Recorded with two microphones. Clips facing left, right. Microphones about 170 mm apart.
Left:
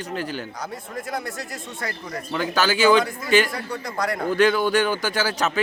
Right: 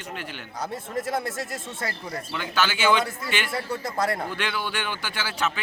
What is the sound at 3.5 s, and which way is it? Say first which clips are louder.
Speech: right 1 dB; 25° right (ahead or behind).